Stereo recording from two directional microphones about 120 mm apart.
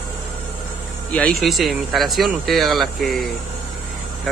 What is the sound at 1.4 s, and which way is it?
Speech, centre (ahead or behind).